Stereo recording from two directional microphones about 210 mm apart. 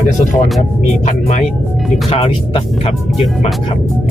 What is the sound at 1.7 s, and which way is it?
Music, centre (ahead or behind).